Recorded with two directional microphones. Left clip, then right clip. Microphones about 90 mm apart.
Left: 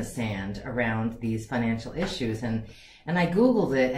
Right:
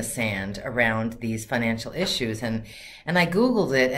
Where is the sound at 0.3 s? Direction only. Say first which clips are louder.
Right 5 dB; 20° right (ahead or behind).